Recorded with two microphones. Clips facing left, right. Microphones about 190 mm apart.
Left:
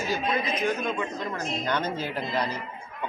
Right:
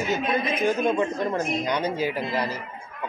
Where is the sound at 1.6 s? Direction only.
10° right (ahead or behind).